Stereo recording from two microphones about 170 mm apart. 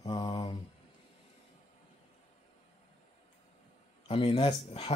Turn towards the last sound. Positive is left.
turn(degrees=35)  # may be behind; listen again after turning